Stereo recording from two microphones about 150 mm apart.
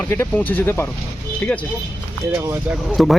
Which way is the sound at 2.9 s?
Centre (ahead or behind).